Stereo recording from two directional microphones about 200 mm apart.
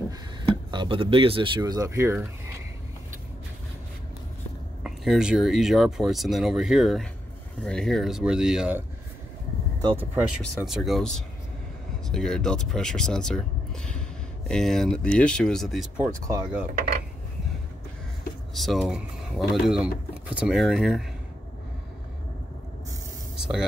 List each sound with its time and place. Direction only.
0.4 s speech: 25° right (ahead or behind)
4.8 s speech: centre (ahead or behind)
9.9 s speech: 5° right (ahead or behind)
16.0 s speech: 15° right (ahead or behind)
18.5 s speech: centre (ahead or behind)
23.3 s a sound: 5° right (ahead or behind)